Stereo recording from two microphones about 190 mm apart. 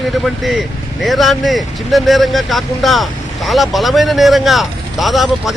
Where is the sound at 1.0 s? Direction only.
Centre (ahead or behind).